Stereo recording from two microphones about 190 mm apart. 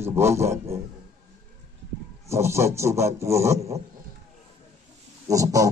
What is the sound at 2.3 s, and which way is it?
A man's voice, 15° right (ahead or behind).